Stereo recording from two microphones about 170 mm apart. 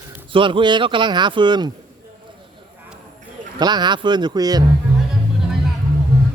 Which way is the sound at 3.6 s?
25° right (ahead or behind).